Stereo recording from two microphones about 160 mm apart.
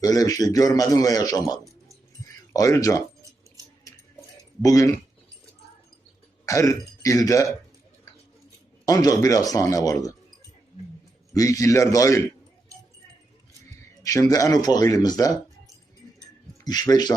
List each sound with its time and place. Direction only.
0.0 s a man's voice: 20° left (ahead or behind)
4.6 s a man's voice: 20° left (ahead or behind)
6.4 s speech: 20° left (ahead or behind)
8.9 s a man's voice: 20° left (ahead or behind)
11.3 s a man's voice: 20° left (ahead or behind)
14.0 s a man's voice: 20° left (ahead or behind)
16.6 s a man's voice: 25° left (ahead or behind)